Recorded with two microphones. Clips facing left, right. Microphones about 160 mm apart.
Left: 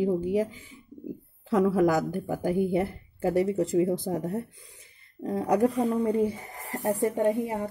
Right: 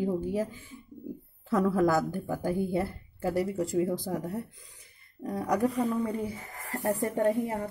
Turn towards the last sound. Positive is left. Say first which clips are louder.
# left 1 dB
turn(degrees=20)  # may be behind; listen again after turning